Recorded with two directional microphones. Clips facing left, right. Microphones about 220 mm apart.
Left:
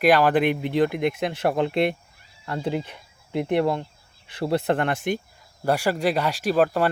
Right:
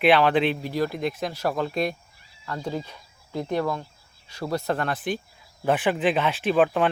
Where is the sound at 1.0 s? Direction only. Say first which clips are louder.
Left 4 dB; 65° left (ahead or behind).